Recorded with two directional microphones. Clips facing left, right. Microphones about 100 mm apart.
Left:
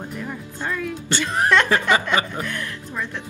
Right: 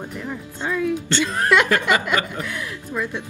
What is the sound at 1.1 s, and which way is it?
Speech, 15° left (ahead or behind).